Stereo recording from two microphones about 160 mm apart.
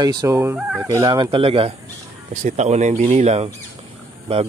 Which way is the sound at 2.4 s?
45° right (ahead or behind).